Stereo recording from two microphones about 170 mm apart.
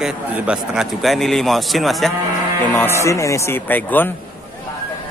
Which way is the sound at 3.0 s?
20° left (ahead or behind).